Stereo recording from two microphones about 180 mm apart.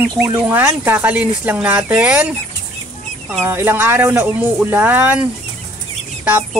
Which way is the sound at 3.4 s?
10° right (ahead or behind).